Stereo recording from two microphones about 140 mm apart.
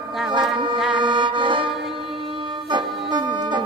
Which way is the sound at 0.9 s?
35° right (ahead or behind).